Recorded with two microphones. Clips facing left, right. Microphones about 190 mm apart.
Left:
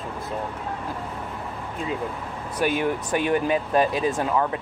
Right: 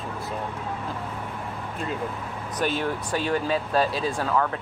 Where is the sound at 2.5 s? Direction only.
10° left (ahead or behind).